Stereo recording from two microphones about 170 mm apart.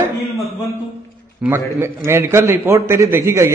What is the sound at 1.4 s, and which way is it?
A man's voice, 15° right (ahead or behind).